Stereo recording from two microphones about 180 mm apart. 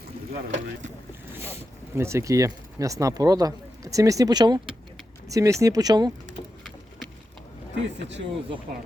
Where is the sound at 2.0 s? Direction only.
15° right (ahead or behind).